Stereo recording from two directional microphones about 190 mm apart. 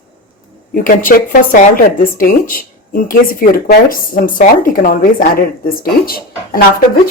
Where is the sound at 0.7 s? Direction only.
50° left (ahead or behind).